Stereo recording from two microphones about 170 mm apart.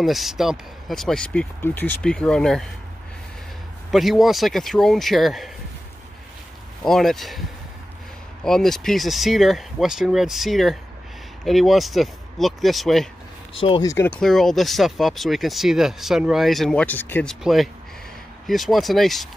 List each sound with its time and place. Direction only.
0.0 s speech: centre (ahead or behind)
3.9 s speech: centre (ahead or behind)
6.8 s speech: centre (ahead or behind)
8.5 s speech: centre (ahead or behind)
13.6 s speech: 30° left (ahead or behind)
13.8 s speech: 15° left (ahead or behind)